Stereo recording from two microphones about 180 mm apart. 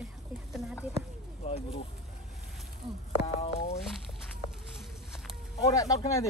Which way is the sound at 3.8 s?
Centre (ahead or behind).